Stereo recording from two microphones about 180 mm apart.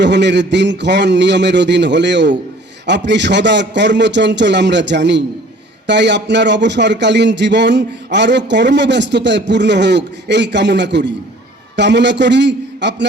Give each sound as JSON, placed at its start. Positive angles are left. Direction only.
{"t": 0.0, "sound": "speech", "side_deg": -75}